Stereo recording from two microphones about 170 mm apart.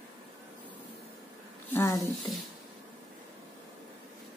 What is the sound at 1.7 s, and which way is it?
Speech, 20° left (ahead or behind).